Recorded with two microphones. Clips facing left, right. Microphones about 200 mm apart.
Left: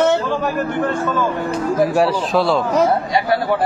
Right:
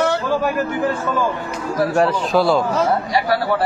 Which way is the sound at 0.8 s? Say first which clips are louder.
Left 1 dB; 10° right (ahead or behind).